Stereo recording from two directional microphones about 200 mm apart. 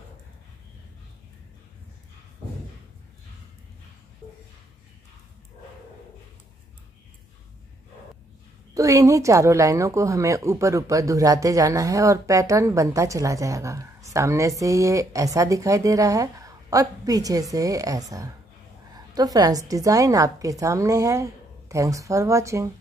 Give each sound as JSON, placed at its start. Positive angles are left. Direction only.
{"t": 8.7, "sound": "a woman's voice", "side_deg": -15}
{"t": 19.1, "sound": "a woman's voice", "side_deg": -20}